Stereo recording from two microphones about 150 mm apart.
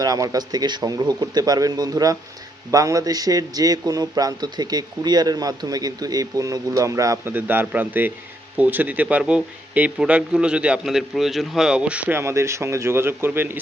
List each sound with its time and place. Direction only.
0.0 s speech: 25° right (ahead or behind)